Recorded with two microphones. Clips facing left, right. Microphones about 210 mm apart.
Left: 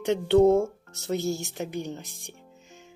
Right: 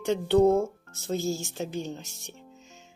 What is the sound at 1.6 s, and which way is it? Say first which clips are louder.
Speech: left 1 dB; 15° left (ahead or behind).